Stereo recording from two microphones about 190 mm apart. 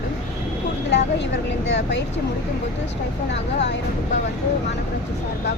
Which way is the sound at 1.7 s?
65° left (ahead or behind).